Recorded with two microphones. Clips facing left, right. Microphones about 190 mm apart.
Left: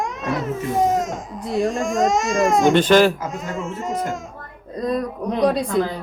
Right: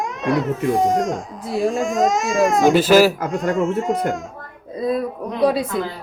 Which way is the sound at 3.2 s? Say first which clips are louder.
Right 8 dB; 65° right (ahead or behind).